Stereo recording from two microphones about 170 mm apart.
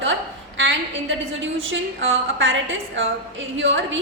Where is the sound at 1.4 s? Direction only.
90° right.